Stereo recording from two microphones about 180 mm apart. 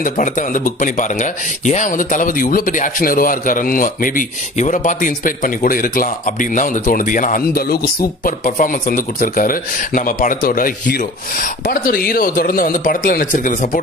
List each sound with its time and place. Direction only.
0.0 s speech: 45° left (ahead or behind)